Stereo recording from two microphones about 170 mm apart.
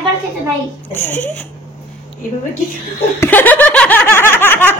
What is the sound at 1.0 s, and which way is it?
Speech, 10° left (ahead or behind).